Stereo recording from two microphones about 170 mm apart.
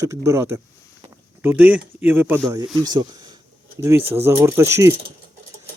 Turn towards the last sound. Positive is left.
turn(degrees=-15)  # may be behind; listen again after turning